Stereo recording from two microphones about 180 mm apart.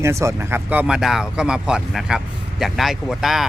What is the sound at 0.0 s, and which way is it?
Speech, 15° right (ahead or behind).